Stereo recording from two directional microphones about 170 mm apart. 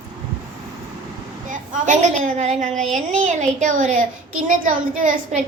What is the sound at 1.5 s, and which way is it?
A woman's voice, 50° right (ahead or behind).